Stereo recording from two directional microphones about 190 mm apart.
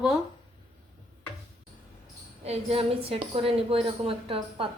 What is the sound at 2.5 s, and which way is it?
A woman's voice, 30° right (ahead or behind).